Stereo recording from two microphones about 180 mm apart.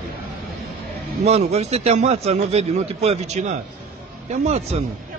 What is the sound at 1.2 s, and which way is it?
A man's voice, 35° right (ahead or behind).